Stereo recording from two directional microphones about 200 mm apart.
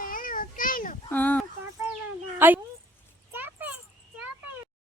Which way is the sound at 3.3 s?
10° right (ahead or behind).